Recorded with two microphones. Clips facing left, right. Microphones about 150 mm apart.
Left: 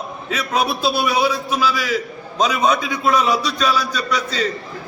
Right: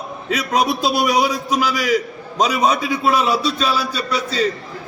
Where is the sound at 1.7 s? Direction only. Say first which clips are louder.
Right 3 dB; 40° right (ahead or behind).